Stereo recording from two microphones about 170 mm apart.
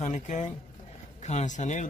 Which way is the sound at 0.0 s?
45° left (ahead or behind).